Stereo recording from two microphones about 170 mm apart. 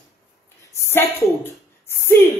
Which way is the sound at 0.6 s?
15° left (ahead or behind).